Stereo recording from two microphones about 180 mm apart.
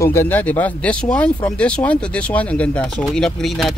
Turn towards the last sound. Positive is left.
turn(degrees=0)  # may be behind; listen again after turning